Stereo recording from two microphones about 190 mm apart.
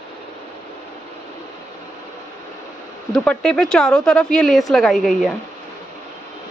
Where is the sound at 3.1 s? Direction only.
5° left (ahead or behind).